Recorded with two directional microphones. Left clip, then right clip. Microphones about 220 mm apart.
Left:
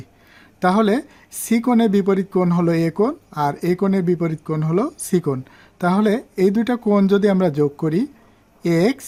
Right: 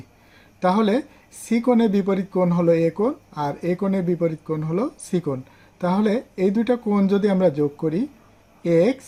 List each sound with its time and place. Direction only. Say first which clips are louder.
0.6 s speech: left 2 dB; 45° left (ahead or behind)